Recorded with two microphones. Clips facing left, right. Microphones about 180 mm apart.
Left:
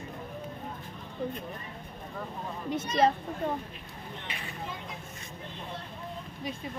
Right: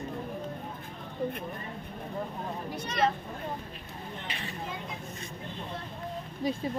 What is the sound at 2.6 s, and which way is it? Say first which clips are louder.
Speech: left 5 dB; 25° left (ahead or behind).